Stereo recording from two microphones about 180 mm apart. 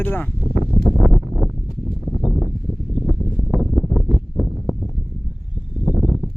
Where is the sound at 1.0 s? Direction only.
Centre (ahead or behind).